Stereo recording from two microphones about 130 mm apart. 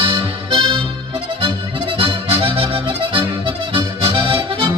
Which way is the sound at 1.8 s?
40° right (ahead or behind).